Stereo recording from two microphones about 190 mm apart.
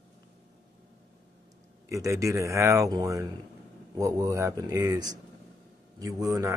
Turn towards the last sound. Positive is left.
turn(degrees=-15)  # may be behind; listen again after turning